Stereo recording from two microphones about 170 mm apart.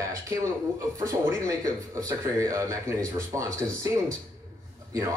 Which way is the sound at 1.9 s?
20° right (ahead or behind).